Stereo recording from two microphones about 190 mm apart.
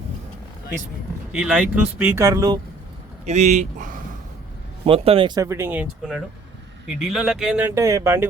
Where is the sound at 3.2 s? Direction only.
35° right (ahead or behind).